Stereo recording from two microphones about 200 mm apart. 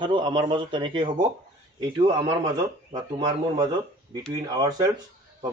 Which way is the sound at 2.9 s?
25° right (ahead or behind).